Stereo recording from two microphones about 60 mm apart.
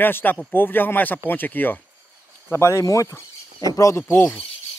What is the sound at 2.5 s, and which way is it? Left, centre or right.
Speech, left.